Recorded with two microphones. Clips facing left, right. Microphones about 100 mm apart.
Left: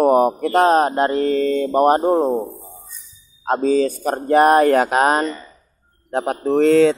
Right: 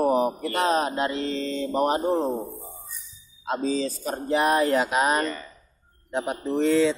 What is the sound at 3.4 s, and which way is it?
Speech, 50° left (ahead or behind).